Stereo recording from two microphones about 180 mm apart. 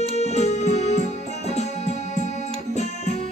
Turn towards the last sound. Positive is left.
turn(degrees=40)  # may be behind; listen again after turning